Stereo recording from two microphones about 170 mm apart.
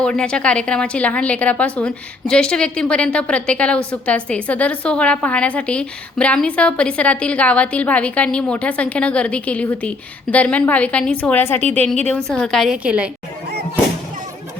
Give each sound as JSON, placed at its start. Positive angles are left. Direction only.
{"t": 0.0, "sound": "a woman's voice", "side_deg": 5}